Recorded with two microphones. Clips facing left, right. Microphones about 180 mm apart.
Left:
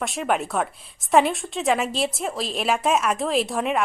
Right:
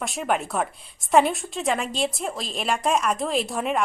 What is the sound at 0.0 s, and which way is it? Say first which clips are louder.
A woman's voice: left 1 dB; centre (ahead or behind).